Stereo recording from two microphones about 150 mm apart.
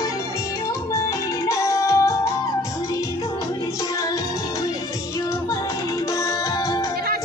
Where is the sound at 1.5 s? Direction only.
20° left (ahead or behind).